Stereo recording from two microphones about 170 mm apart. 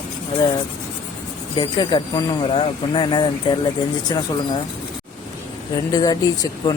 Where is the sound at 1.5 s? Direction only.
25° left (ahead or behind).